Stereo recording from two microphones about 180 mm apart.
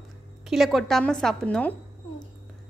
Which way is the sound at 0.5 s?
Centre (ahead or behind).